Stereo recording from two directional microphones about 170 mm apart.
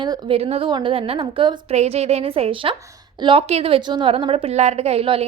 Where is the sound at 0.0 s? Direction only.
30° right (ahead or behind).